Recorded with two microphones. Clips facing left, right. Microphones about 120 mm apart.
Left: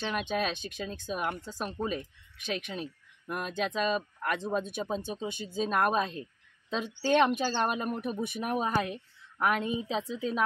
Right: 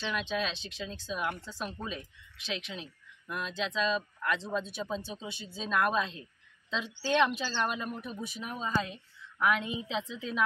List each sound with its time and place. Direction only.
0.0 s speech: 50° left (ahead or behind)
9.4 s a woman's voice: 45° left (ahead or behind)